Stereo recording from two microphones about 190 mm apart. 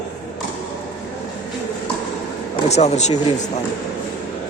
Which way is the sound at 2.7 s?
35° left (ahead or behind).